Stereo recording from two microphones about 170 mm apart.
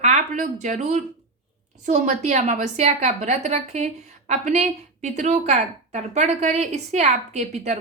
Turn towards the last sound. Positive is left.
turn(degrees=-45)  # may be behind; listen again after turning